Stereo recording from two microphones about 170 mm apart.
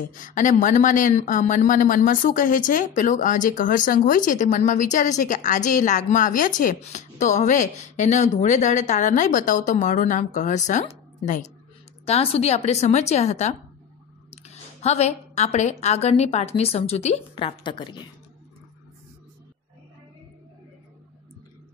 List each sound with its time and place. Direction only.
0.1 s speech: 50° left (ahead or behind)
12.1 s a woman's voice: 35° left (ahead or behind)